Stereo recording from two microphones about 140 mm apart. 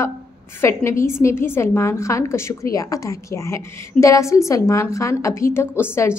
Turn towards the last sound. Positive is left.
turn(degrees=15)  # may be behind; listen again after turning